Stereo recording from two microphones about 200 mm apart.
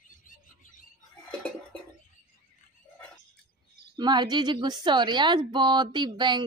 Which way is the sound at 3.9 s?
20° right (ahead or behind).